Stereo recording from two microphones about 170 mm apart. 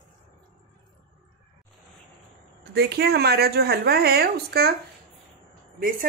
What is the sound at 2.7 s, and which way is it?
A woman's voice, 70° right (ahead or behind).